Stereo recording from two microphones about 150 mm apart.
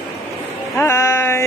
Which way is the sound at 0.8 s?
20° left (ahead or behind).